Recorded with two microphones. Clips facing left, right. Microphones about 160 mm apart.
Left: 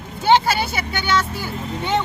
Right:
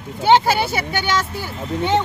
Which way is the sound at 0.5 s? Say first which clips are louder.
Right 3 dB; 25° right (ahead or behind).